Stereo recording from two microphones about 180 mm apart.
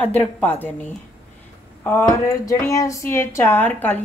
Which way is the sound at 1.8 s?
15° left (ahead or behind).